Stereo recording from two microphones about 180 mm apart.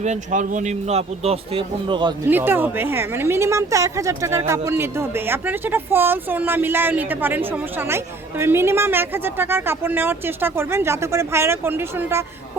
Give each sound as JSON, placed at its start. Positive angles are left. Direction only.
{"t": 0.0, "sound": "a man's voice", "side_deg": -40}
{"t": 2.2, "sound": "speech", "side_deg": -10}